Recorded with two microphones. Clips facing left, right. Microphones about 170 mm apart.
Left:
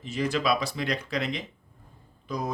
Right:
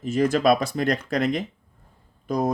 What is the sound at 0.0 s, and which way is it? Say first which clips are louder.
Speech: right 7 dB; 45° right (ahead or behind).